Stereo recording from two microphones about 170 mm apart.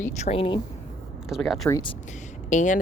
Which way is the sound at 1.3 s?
Centre (ahead or behind).